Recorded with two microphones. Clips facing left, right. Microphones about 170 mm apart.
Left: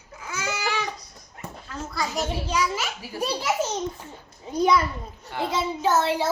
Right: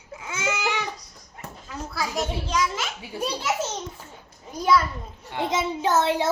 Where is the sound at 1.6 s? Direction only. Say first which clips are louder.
Even; 5° right (ahead or behind).